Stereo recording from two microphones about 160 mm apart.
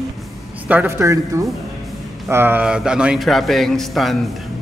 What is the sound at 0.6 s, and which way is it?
A man's voice, 10° right (ahead or behind).